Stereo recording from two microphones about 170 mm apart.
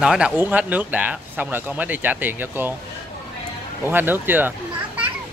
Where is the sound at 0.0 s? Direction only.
5° right (ahead or behind).